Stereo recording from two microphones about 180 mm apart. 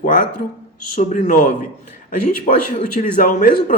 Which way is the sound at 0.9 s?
45° left (ahead or behind).